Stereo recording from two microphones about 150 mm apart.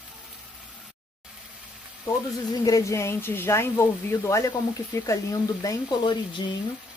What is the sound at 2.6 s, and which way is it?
Speech, 20° left (ahead or behind).